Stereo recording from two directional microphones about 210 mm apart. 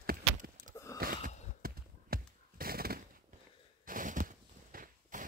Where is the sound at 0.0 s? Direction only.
40° right (ahead or behind).